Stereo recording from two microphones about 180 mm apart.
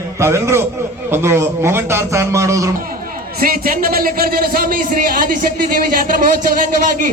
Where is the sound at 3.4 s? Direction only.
55° right (ahead or behind).